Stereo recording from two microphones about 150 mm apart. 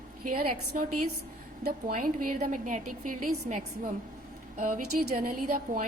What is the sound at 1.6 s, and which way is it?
A woman's voice, 80° right.